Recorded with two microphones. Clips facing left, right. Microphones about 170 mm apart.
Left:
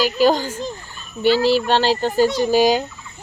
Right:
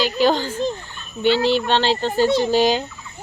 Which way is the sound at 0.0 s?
10° left (ahead or behind).